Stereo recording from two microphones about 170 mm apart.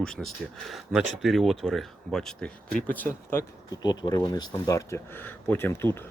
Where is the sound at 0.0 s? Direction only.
5° left (ahead or behind).